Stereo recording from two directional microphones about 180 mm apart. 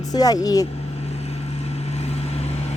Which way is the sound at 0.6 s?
35° left (ahead or behind).